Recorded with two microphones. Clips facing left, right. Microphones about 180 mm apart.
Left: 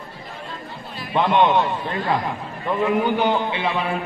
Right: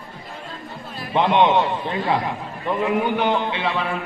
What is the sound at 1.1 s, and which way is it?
A man's voice, 20° right (ahead or behind).